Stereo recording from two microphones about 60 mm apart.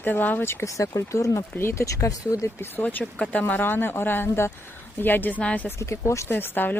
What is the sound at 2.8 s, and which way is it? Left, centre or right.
Speech, left.